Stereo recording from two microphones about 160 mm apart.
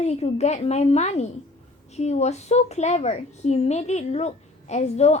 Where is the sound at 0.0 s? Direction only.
45° left (ahead or behind).